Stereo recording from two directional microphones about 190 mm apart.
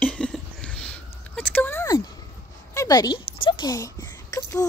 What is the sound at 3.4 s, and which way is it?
Speech, 25° left (ahead or behind).